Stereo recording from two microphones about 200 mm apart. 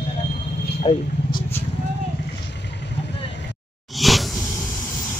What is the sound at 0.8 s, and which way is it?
Speech, 25° left (ahead or behind).